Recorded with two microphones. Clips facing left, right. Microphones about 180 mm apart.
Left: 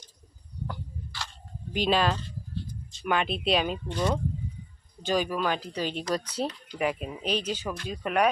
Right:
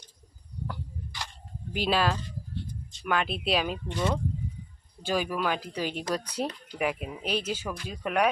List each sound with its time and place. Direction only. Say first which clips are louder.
1.1 s a sound: even; 15° right (ahead or behind)
1.7 s speech: left 1 dB; 5° right (ahead or behind)
5.0 s speech: left 1 dB; 10° right (ahead or behind)